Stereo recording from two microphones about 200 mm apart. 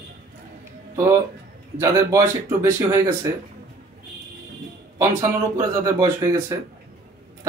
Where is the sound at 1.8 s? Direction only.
15° right (ahead or behind).